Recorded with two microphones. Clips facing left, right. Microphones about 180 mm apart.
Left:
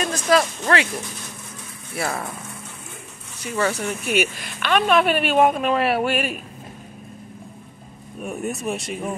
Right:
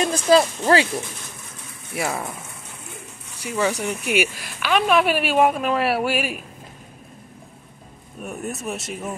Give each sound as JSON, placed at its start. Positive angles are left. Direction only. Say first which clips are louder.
{"t": 0.0, "sound": "speech", "louder": "right 3 dB", "side_deg": -25}
{"t": 2.0, "sound": "speech", "louder": "right 1 dB", "side_deg": -10}
{"t": 3.4, "sound": "speech", "louder": "even", "side_deg": -10}
{"t": 8.2, "sound": "speech", "louder": "left 3 dB", "side_deg": 0}